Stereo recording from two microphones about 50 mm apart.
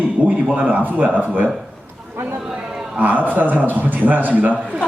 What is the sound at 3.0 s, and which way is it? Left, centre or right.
Speech, right.